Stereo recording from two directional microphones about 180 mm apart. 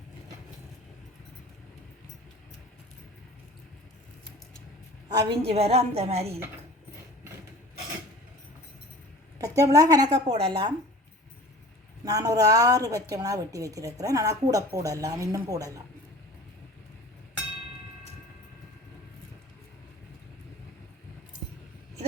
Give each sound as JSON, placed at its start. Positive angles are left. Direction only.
{"t": 5.0, "sound": "a woman's voice", "side_deg": -25}
{"t": 5.4, "sound": "a woman's voice", "side_deg": -35}
{"t": 9.4, "sound": "a woman's voice", "side_deg": -20}
{"t": 10.2, "sound": "a woman's voice", "side_deg": -30}
{"t": 12.0, "sound": "a woman's voice", "side_deg": -20}